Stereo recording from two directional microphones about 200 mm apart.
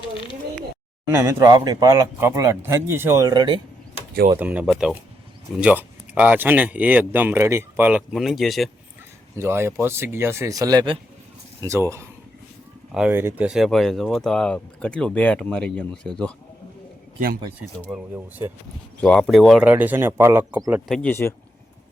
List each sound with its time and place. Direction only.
1.1 s speech: 15° right (ahead or behind)
4.4 s speech: 5° right (ahead or behind)
9.3 s speech: 10° right (ahead or behind)
12.9 s speech: 5° right (ahead or behind)
17.9 s speech: 10° right (ahead or behind)
19.0 s speech: 5° left (ahead or behind)